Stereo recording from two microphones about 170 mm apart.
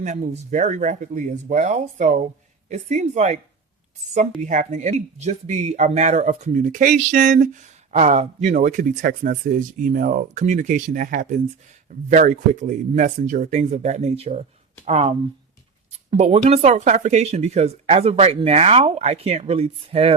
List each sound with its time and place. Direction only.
0.0 s speech: 45° right (ahead or behind)
4.4 s speech: 45° right (ahead or behind)